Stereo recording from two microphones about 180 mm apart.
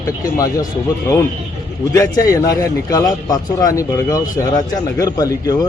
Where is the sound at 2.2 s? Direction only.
20° left (ahead or behind).